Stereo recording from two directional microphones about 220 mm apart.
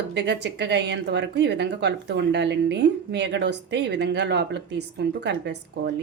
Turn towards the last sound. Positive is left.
turn(degrees=-50)  # may be behind; listen again after turning